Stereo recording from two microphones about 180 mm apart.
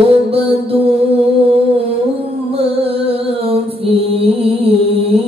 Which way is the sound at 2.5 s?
30° right (ahead or behind).